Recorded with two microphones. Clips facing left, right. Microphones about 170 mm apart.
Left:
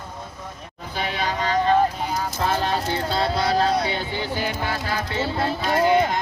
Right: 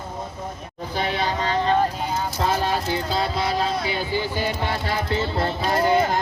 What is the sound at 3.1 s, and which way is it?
Music, centre (ahead or behind).